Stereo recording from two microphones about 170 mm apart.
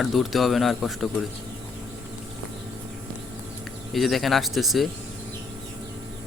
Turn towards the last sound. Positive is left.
turn(degrees=0)  # may be behind; listen again after turning